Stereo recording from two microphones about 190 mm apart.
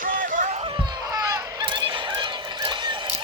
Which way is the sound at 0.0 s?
45° right (ahead or behind).